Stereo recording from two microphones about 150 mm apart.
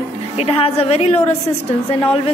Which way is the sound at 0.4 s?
40° left (ahead or behind).